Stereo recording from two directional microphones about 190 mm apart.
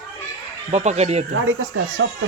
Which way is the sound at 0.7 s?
35° right (ahead or behind).